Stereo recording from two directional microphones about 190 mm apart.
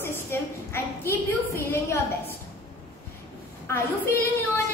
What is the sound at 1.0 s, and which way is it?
Speech, 15° left (ahead or behind).